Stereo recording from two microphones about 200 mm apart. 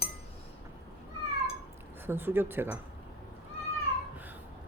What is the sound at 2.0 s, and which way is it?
Speech, 10° right (ahead or behind).